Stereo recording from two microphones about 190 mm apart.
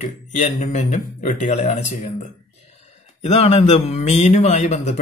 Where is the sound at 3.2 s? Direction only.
30° left (ahead or behind).